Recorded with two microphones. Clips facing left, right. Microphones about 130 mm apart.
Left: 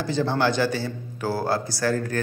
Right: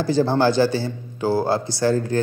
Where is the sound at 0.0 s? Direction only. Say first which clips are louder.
Right 5 dB; 35° right (ahead or behind).